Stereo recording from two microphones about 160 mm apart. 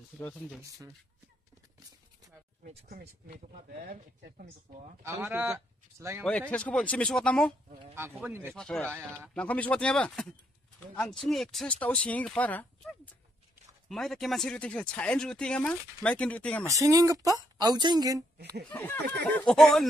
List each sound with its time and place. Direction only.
0.2 s speech: 10° left (ahead or behind)
3.8 s speech: 60° right (ahead or behind)
5.0 s speech: 15° right (ahead or behind)
6.5 s speech: 5° left (ahead or behind)
7.9 s speech: 15° right (ahead or behind)
8.5 s speech: 5° left (ahead or behind)
8.9 s speech: 10° right (ahead or behind)
9.3 s speech: 10° left (ahead or behind)
16.6 s speech: 20° right (ahead or behind)
18.7 s speech: 10° left (ahead or behind)